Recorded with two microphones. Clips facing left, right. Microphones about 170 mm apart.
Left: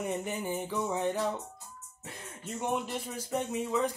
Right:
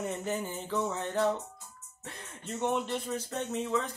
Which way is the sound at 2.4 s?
10° left (ahead or behind).